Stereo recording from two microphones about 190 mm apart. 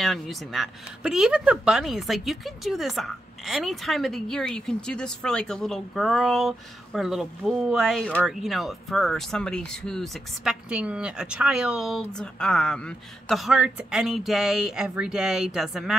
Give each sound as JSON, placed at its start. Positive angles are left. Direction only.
{"t": 0.0, "sound": "speech", "side_deg": 0}